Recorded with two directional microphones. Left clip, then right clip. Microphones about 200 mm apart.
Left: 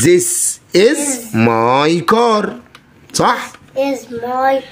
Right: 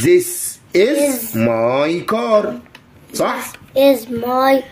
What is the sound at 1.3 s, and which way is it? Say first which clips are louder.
Speech: left 7 dB; 45° left (ahead or behind).